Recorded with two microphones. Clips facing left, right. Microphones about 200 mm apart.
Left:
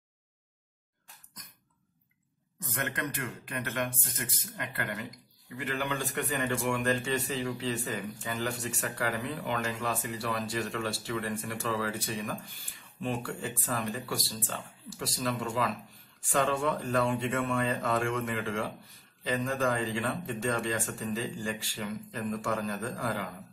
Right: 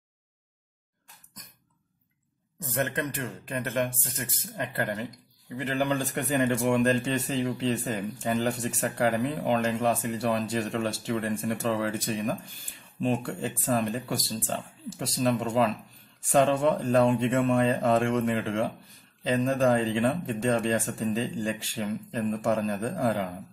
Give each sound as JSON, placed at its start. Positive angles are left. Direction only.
{"t": 2.6, "sound": "speech", "side_deg": -25}
{"t": 5.8, "sound": "speech", "side_deg": -40}
{"t": 13.7, "sound": "speech", "side_deg": -40}